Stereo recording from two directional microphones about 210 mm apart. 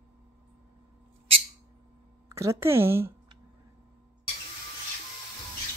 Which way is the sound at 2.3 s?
15° right (ahead or behind).